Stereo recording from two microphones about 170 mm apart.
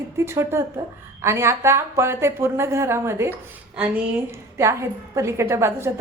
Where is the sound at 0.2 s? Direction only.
15° right (ahead or behind).